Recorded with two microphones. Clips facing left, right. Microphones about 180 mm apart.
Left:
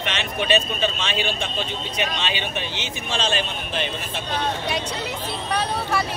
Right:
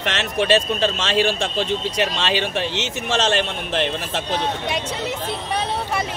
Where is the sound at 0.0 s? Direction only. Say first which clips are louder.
Right 4 dB; 75° right (ahead or behind).